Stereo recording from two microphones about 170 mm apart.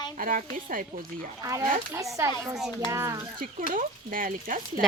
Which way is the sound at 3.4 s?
55° right (ahead or behind).